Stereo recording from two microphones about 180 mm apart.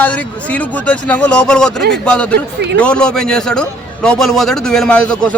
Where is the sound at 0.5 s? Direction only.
10° left (ahead or behind).